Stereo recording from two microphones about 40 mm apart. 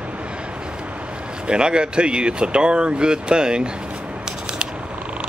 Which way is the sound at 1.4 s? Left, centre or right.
Right.